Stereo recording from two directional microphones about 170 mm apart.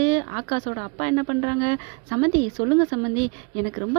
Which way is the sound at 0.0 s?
35° right (ahead or behind).